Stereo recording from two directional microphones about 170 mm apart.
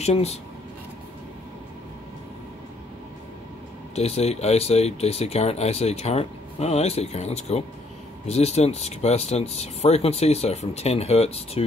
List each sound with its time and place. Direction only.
0.0 s speech: 40° left (ahead or behind)
3.9 s speech: 40° left (ahead or behind)